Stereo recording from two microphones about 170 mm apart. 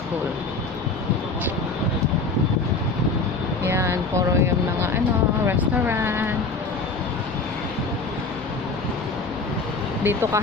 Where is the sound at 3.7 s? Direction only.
15° right (ahead or behind).